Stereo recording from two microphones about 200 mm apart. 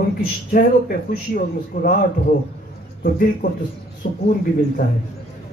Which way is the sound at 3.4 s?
40° left (ahead or behind).